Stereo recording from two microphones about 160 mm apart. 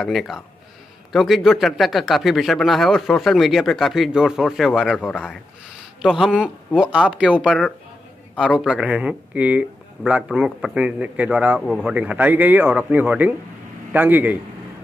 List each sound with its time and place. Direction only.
0.0 s speech: centre (ahead or behind)
6.0 s speech: centre (ahead or behind)